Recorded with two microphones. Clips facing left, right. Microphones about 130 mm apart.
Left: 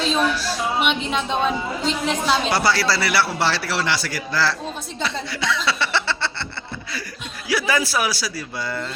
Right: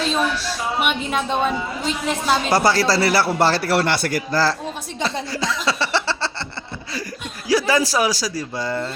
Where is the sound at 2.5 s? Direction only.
45° right (ahead or behind).